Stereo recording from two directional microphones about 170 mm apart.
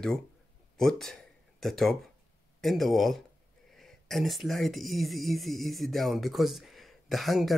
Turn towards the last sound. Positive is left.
turn(degrees=0)  # may be behind; listen again after turning